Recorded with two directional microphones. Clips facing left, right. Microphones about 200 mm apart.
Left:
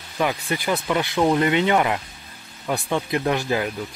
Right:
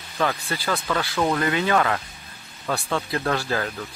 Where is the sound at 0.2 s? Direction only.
15° left (ahead or behind).